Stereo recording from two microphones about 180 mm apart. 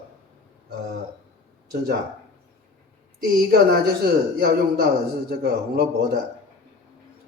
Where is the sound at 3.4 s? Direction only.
60° right (ahead or behind).